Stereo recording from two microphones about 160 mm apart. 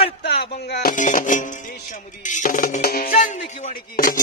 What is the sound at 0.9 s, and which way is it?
Music, 55° left (ahead or behind).